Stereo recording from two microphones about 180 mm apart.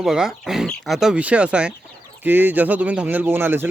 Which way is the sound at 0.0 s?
Centre (ahead or behind).